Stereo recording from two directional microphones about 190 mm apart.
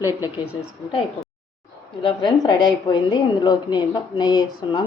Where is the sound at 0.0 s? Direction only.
20° left (ahead or behind).